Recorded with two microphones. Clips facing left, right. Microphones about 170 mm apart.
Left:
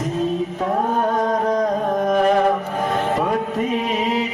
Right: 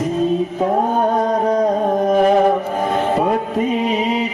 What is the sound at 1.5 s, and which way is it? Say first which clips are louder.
Carnatic music: right 3 dB; 25° right (ahead or behind).